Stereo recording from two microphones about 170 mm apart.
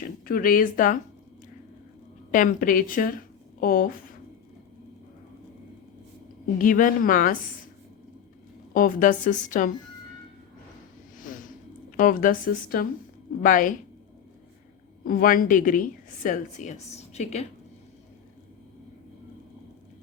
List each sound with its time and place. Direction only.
0.3 s a woman's voice: 55° left (ahead or behind)
2.3 s a woman's voice: 50° left (ahead or behind)
6.6 s a woman's voice: 50° left (ahead or behind)
8.7 s a woman's voice: 55° left (ahead or behind)
11.2 s a sound: 50° left (ahead or behind)
11.9 s a woman's voice: 55° left (ahead or behind)
15.0 s a woman's voice: 55° left (ahead or behind)